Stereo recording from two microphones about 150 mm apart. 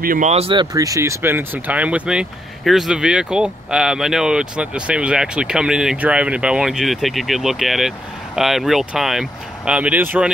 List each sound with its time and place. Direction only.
0.0 s speech: 70° right (ahead or behind)
0.3 s speech: 40° right (ahead or behind)
0.7 s speech: 20° right (ahead or behind)